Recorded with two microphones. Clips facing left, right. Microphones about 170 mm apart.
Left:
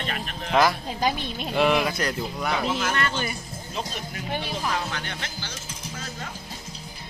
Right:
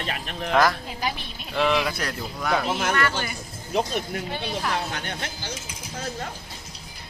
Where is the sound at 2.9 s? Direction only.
25° left (ahead or behind).